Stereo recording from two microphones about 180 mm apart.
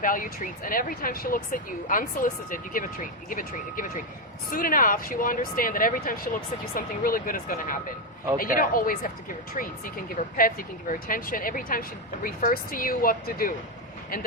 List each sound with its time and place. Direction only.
0.0 s speech: 50° left (ahead or behind)